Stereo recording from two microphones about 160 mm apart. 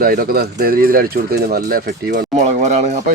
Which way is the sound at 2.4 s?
45° right (ahead or behind).